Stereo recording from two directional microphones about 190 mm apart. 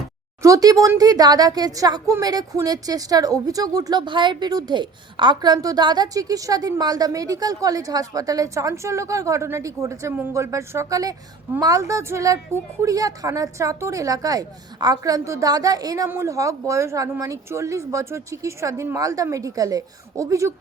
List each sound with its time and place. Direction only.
0.4 s speech: 20° right (ahead or behind)